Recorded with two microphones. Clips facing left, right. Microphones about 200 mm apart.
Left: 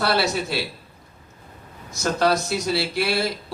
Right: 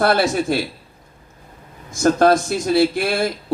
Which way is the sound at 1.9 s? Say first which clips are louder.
Right 7 dB; 50° right (ahead or behind).